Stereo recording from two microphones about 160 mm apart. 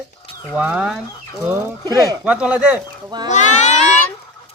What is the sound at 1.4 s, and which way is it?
Speech, 20° right (ahead or behind).